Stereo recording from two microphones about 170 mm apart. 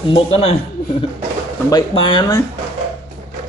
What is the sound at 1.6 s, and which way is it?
Speech, 25° left (ahead or behind).